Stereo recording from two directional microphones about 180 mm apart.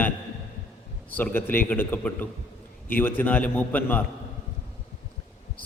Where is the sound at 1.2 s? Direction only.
10° left (ahead or behind).